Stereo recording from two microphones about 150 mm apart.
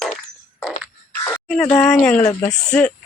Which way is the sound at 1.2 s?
10° left (ahead or behind).